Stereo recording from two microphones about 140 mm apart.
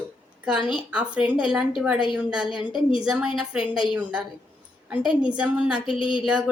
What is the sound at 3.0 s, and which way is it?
A woman's voice, 5° right (ahead or behind).